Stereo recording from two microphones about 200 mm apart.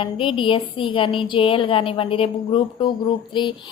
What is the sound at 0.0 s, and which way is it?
A woman's voice, 25° left (ahead or behind).